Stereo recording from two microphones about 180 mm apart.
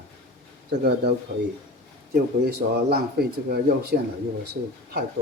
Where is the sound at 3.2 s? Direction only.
60° right (ahead or behind).